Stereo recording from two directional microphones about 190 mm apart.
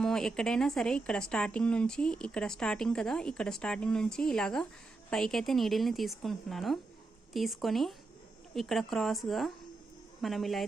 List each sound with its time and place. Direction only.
0.0 s a woman's voice: 5° left (ahead or behind)